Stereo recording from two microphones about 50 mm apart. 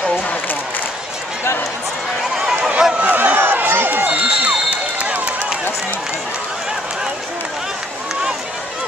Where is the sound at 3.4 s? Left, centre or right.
Right.